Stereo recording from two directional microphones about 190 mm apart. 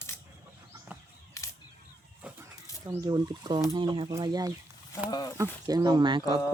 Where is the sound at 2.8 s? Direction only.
20° right (ahead or behind).